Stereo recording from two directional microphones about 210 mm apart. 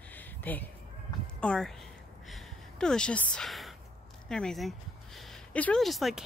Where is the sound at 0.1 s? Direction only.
10° left (ahead or behind).